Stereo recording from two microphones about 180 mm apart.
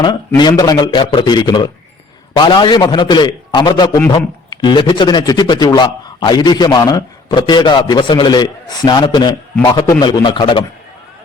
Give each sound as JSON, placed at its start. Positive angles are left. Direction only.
{"t": 0.3, "sound": "a man's voice", "side_deg": 25}